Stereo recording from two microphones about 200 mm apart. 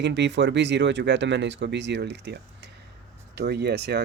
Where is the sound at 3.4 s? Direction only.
55° right (ahead or behind).